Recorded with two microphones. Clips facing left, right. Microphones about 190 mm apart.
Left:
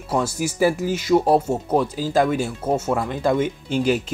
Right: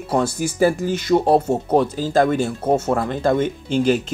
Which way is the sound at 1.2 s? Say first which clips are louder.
Right 2 dB; 25° right (ahead or behind).